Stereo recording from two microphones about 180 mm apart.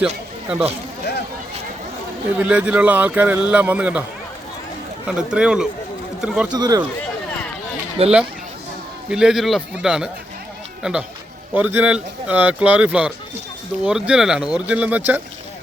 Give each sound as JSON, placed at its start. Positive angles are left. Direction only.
{"t": 0.4, "sound": "speech", "side_deg": -5}
{"t": 2.4, "sound": "speech", "side_deg": -5}
{"t": 5.0, "sound": "speech", "side_deg": -5}
{"t": 6.5, "sound": "speech", "side_deg": -20}
{"t": 8.0, "sound": "speech", "side_deg": -35}
{"t": 9.0, "sound": "speech", "side_deg": -5}